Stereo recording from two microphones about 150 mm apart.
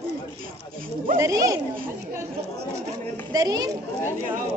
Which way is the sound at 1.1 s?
20° right (ahead or behind).